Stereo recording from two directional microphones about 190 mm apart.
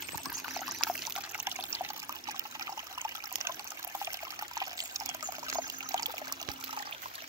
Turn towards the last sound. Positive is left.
turn(degrees=-20)  # may be behind; listen again after turning